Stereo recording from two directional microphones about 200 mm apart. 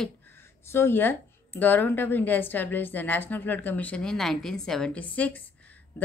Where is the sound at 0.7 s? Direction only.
10° left (ahead or behind).